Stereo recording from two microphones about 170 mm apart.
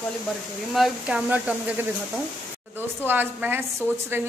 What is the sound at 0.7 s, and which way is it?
Speech, 5° right (ahead or behind).